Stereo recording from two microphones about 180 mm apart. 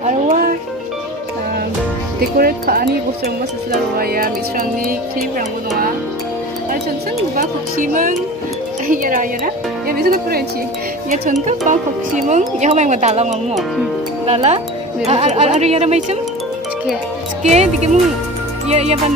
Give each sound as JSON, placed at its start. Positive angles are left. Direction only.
{"t": 0.0, "sound": "music", "side_deg": -40}
{"t": 2.3, "sound": "speech", "side_deg": -55}
{"t": 3.9, "sound": "speech", "side_deg": -55}
{"t": 7.3, "sound": "speech", "side_deg": -45}
{"t": 11.4, "sound": "speech", "side_deg": -45}
{"t": 17.4, "sound": "speech", "side_deg": -40}